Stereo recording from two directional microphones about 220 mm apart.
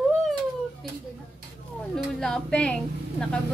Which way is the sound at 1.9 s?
5° left (ahead or behind).